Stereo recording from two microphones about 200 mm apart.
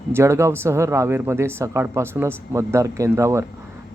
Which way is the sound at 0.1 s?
15° right (ahead or behind).